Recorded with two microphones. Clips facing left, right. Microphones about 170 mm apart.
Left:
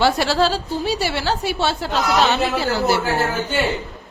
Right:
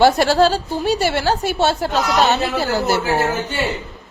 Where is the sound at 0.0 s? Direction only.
45° right (ahead or behind).